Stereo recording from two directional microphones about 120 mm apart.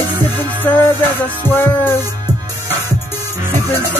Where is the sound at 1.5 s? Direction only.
20° left (ahead or behind).